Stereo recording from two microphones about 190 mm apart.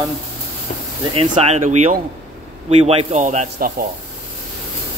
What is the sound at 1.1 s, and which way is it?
Speech, 30° right (ahead or behind).